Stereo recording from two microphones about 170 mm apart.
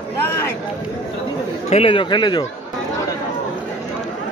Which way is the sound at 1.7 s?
35° left (ahead or behind).